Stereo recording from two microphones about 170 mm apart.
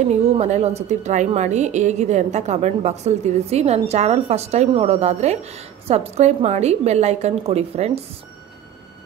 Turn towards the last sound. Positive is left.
turn(degrees=-40)  # may be behind; listen again after turning